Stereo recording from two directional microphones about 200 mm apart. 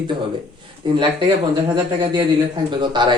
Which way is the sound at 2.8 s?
20° right (ahead or behind).